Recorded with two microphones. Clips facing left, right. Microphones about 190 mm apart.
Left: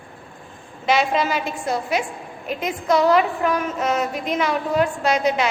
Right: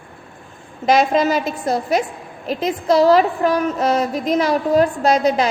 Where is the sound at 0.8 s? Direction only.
40° right (ahead or behind).